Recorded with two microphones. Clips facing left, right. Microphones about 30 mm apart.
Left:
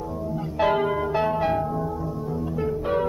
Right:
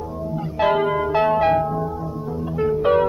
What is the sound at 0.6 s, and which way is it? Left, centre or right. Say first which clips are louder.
Church bell: right 3 dB; centre.